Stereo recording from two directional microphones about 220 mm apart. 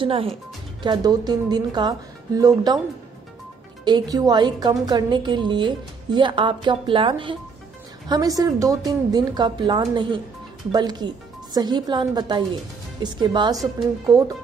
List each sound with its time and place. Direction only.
0.0 s a woman's voice: 25° right (ahead or behind)
3.8 s a woman's voice: 20° right (ahead or behind)